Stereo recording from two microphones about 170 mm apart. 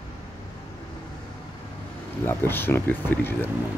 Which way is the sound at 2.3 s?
10° left (ahead or behind).